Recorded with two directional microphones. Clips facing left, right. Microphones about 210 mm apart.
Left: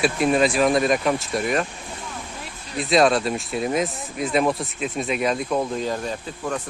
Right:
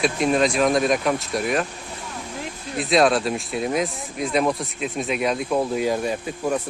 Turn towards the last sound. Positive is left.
turn(degrees=-10)  # may be behind; listen again after turning